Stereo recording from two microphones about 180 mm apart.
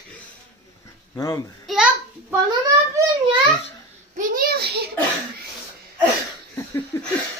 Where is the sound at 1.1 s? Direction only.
20° left (ahead or behind).